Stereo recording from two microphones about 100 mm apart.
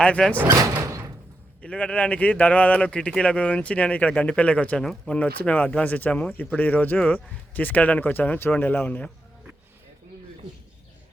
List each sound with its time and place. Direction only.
0.0 s speech: 10° left (ahead or behind)
0.4 s speech: 35° right (ahead or behind)
0.7 s door: 30° right (ahead or behind)
1.6 s speech: 10° left (ahead or behind)